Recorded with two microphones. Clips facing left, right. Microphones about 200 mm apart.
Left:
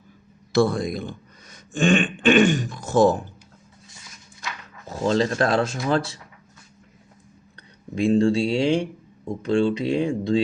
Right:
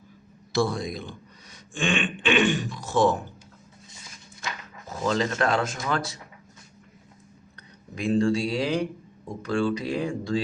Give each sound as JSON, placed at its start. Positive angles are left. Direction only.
{"t": 0.5, "sound": "speech", "side_deg": 55}
{"t": 4.9, "sound": "speech", "side_deg": 30}
{"t": 7.9, "sound": "speech", "side_deg": 30}